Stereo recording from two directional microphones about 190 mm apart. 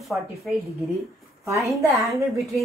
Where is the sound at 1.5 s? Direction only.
15° right (ahead or behind).